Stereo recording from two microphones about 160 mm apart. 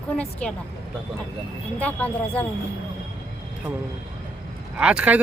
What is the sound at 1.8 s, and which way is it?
Speech, 10° left (ahead or behind).